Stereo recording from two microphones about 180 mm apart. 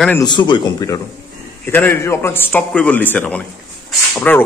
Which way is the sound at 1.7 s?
10° left (ahead or behind).